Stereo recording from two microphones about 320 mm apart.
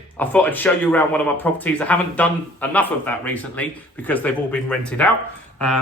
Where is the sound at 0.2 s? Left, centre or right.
Centre.